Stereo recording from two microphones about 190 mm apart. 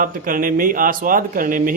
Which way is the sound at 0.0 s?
45° right (ahead or behind).